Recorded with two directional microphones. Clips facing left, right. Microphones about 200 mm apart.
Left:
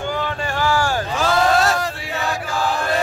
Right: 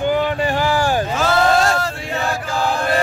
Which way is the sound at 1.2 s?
5° right (ahead or behind).